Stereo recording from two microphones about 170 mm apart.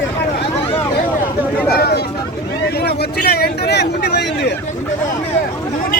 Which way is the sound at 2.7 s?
75° left (ahead or behind).